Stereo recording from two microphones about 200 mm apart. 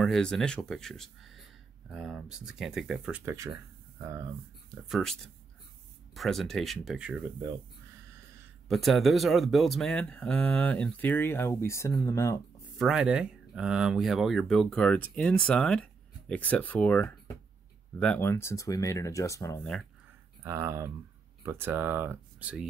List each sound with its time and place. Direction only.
0.0 s speech: centre (ahead or behind)
4.8 s speech: centre (ahead or behind)
8.6 s speech: centre (ahead or behind); by 12.4 s 15° left (ahead or behind)
12.7 s speech: centre (ahead or behind)
20.4 s speech: 15° right (ahead or behind)